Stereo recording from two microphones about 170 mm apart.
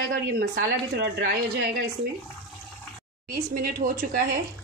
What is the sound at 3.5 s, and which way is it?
Speech, 60° right (ahead or behind).